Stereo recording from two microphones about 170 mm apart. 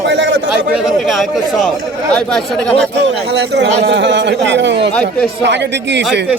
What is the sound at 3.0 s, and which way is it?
Speech, 90° right.